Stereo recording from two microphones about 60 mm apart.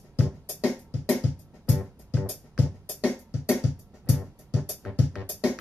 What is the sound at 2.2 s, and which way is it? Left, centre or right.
Music, centre.